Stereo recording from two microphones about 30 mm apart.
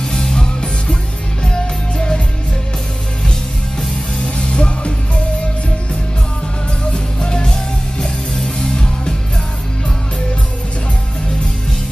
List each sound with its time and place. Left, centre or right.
0.1 s music: left
4.2 s music: left
6.9 s music: left